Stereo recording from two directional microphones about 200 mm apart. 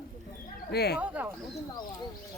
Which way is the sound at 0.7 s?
55° left (ahead or behind).